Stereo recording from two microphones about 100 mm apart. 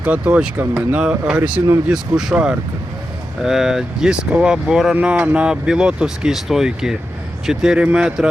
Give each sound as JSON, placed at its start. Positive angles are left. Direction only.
{"t": 0.0, "sound": "speech", "side_deg": -15}